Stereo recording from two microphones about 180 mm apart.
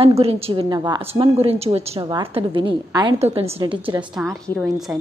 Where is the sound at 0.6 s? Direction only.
20° right (ahead or behind).